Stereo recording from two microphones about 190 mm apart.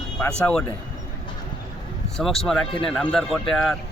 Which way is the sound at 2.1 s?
Centre (ahead or behind).